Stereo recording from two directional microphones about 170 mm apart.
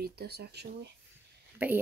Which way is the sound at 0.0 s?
70° right (ahead or behind).